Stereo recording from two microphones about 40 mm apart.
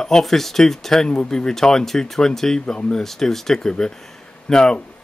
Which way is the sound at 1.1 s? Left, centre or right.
Left.